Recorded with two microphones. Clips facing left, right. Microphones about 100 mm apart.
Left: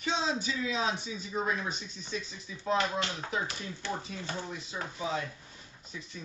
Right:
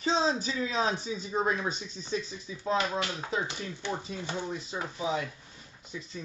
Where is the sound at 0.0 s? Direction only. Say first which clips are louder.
Right 4 dB; 35° right (ahead or behind).